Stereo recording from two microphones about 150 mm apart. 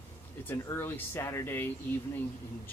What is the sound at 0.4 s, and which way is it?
Speech, 15° left (ahead or behind).